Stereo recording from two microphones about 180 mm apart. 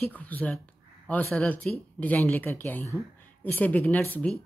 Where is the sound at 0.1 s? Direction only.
10° left (ahead or behind).